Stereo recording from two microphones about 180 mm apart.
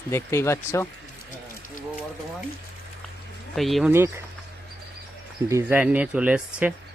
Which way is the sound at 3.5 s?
Centre (ahead or behind).